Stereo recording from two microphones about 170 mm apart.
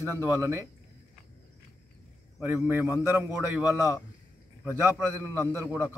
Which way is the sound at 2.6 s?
15° right (ahead or behind).